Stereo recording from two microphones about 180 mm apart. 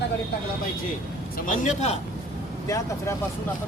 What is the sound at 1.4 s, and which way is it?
Speech, 45° left (ahead or behind).